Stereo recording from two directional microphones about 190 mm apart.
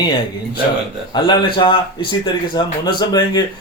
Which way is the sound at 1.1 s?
25° left (ahead or behind).